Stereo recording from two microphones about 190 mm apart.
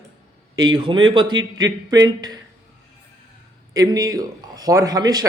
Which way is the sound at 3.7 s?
20° right (ahead or behind).